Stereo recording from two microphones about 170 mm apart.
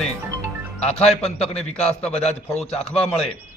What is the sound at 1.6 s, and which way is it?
A man's voice, 5° left (ahead or behind).